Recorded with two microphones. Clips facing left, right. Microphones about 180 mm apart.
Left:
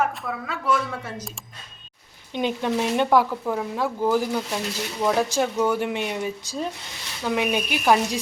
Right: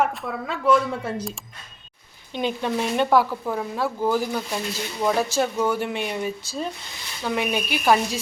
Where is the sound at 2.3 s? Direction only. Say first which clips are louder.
Left 1 dB; 15° left (ahead or behind).